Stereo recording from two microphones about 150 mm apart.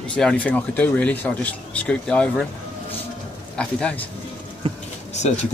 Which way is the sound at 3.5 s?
10° left (ahead or behind).